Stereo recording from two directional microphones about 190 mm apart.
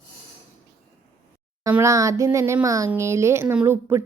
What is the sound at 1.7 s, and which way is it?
Speech, 15° right (ahead or behind).